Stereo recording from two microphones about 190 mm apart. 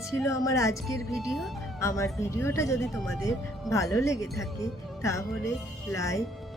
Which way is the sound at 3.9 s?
15° left (ahead or behind).